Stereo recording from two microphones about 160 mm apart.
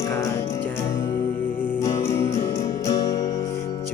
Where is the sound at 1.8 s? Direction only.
20° left (ahead or behind).